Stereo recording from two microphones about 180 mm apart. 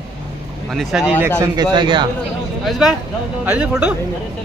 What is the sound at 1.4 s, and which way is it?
Speech, 25° right (ahead or behind).